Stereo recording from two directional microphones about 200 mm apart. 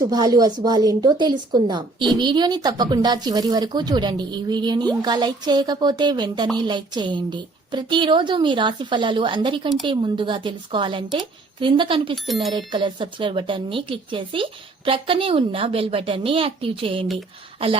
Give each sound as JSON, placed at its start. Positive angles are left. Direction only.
{"t": 0.0, "sound": "speech", "side_deg": -20}
{"t": 12.1, "sound": "speech", "side_deg": 0}
{"t": 12.5, "sound": "speech", "side_deg": -25}